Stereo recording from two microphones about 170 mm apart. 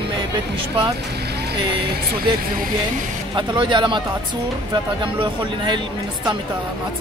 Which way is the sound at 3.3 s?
30° right (ahead or behind).